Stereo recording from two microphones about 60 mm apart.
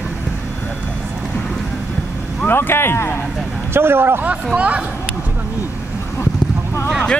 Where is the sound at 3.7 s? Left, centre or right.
Right.